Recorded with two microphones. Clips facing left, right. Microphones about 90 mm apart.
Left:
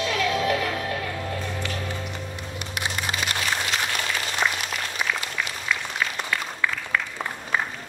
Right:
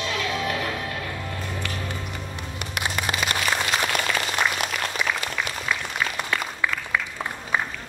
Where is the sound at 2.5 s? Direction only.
60° right (ahead or behind).